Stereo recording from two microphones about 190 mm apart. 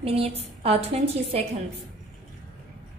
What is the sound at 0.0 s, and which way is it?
Speech, 30° right (ahead or behind).